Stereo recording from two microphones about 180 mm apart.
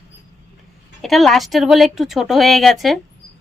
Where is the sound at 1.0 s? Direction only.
Centre (ahead or behind).